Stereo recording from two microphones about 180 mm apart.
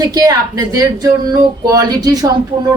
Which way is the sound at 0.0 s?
20° right (ahead or behind).